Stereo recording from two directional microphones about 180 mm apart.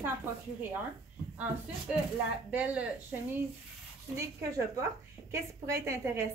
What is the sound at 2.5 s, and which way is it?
Speech, 5° right (ahead or behind).